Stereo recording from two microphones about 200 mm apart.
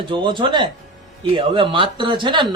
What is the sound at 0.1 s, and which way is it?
Speech, 25° right (ahead or behind).